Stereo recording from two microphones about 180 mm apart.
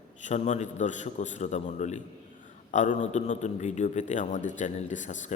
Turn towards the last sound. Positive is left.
turn(degrees=45)  # may be behind; listen again after turning